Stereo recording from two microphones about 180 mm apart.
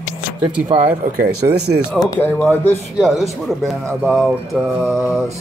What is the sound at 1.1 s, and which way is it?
Speech, 60° right (ahead or behind).